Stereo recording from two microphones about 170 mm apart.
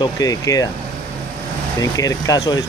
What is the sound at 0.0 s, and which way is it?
Speech, 20° left (ahead or behind).